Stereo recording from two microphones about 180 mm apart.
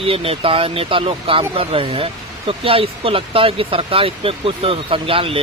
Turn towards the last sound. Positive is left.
turn(degrees=-30)  # may be behind; listen again after turning